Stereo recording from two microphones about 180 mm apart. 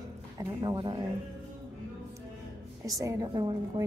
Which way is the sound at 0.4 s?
20° right (ahead or behind).